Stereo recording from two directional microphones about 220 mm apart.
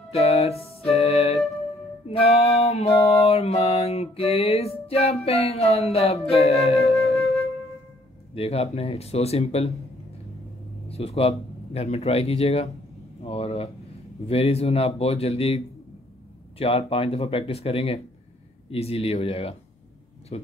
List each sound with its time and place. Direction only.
0.1 s music: 30° left (ahead or behind)
5.2 s speech: 30° left (ahead or behind)
6.8 s music: centre (ahead or behind)
8.4 s speech: 25° left (ahead or behind)
10.9 s speech: 25° left (ahead or behind)